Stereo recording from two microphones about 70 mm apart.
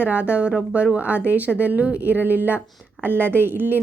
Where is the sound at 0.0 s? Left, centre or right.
Right.